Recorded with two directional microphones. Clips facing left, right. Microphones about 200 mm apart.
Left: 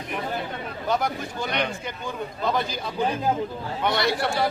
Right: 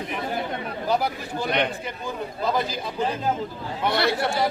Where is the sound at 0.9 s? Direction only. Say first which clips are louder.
Even; 5° right (ahead or behind).